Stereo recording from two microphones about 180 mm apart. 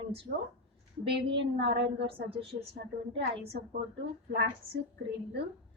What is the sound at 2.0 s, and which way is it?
A woman's voice, 30° right (ahead or behind).